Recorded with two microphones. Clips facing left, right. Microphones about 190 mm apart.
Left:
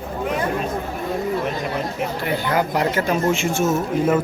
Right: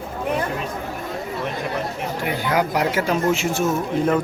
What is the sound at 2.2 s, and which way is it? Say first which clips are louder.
Speech: right 1 dB; 10° right (ahead or behind).